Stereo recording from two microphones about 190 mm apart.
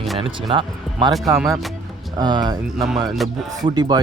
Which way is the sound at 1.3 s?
Centre (ahead or behind).